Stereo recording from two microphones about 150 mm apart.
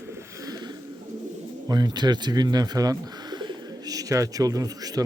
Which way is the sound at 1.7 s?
30° right (ahead or behind).